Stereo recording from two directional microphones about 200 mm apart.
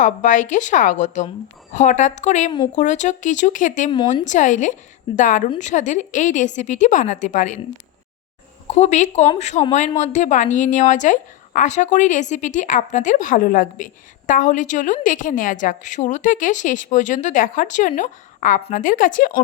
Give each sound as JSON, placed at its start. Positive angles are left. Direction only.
{"t": 0.0, "sound": "speech", "side_deg": 40}
{"t": 8.6, "sound": "speech", "side_deg": 35}